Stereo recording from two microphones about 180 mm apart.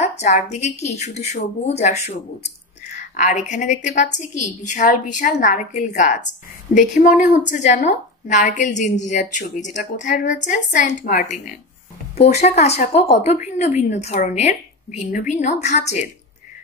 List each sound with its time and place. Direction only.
0.5 s a woman's voice: 40° left (ahead or behind)